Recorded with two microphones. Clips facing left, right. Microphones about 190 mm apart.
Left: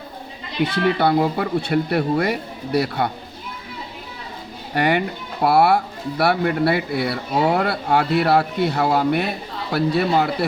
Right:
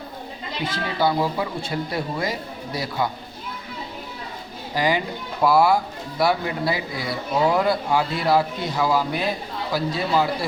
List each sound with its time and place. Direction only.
0.6 s speech: 65° left (ahead or behind)
4.7 s speech: 60° left (ahead or behind)